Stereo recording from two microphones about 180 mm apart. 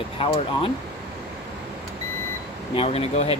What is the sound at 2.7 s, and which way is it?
Speech, 35° left (ahead or behind).